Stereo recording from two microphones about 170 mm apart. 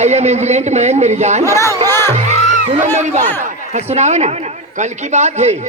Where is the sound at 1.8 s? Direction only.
15° left (ahead or behind).